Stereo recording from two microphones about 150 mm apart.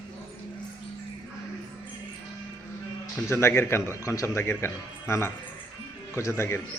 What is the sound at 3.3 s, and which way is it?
A man's voice, 15° left (ahead or behind).